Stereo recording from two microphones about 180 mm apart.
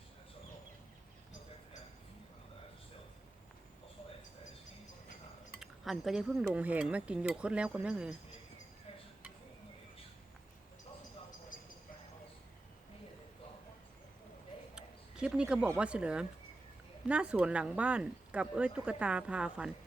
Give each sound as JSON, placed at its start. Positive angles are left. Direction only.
{"t": 5.5, "sound": "speech", "side_deg": 0}
{"t": 11.3, "sound": "a sound", "side_deg": 50}
{"t": 14.8, "sound": "speech", "side_deg": -5}